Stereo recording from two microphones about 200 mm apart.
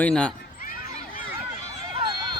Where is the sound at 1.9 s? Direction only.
25° right (ahead or behind).